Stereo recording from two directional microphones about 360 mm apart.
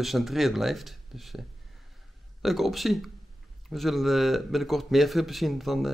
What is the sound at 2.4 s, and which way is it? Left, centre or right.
Speech, centre.